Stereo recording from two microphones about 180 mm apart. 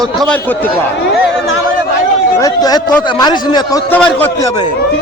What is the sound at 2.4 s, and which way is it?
A man's voice, 20° left (ahead or behind).